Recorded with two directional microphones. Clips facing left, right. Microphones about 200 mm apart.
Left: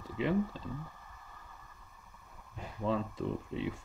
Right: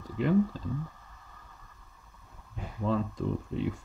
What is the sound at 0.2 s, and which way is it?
Speech, centre (ahead or behind).